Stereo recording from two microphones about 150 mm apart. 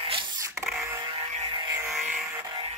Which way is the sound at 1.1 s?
40° right (ahead or behind).